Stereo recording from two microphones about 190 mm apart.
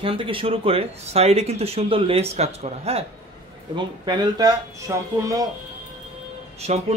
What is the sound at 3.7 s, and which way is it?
Speech, 25° right (ahead or behind).